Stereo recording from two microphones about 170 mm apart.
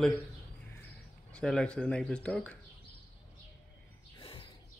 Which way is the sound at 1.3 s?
5° left (ahead or behind).